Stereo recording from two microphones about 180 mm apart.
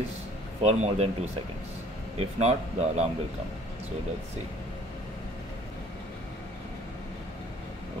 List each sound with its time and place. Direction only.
0.6 s speech: 35° right (ahead or behind)
2.1 s speech: 35° right (ahead or behind)